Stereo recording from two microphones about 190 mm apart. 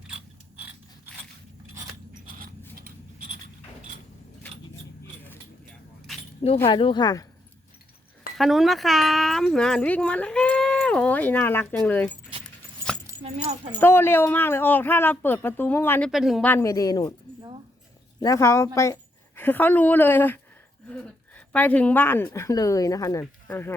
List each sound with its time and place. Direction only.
2.4 s zipper: 50° right (ahead or behind)
6.7 s speech: 25° left (ahead or behind)
8.4 s speech: centre (ahead or behind)
13.2 s speech: 35° right (ahead or behind)
13.7 s speech: 10° left (ahead or behind)
16.5 s speech: 15° left (ahead or behind)
18.2 s speech: 15° left (ahead or behind)